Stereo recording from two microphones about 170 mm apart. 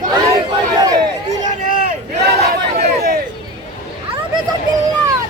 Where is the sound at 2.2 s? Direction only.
70° right (ahead or behind).